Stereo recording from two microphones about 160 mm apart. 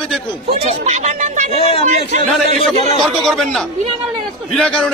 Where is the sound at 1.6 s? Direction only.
35° left (ahead or behind).